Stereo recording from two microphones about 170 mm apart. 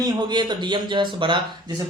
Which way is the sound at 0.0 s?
25° right (ahead or behind).